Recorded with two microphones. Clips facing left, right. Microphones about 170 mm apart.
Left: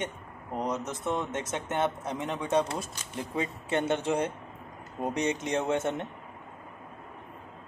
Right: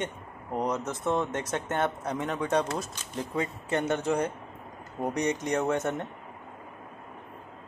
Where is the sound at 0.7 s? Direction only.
20° left (ahead or behind).